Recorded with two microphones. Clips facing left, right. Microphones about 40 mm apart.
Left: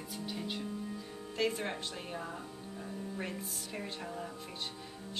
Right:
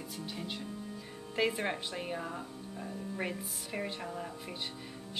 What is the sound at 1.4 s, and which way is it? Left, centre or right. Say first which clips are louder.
Speech: right 2 dB; centre.